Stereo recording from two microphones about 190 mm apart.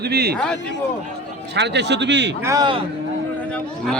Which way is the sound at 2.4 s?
20° right (ahead or behind).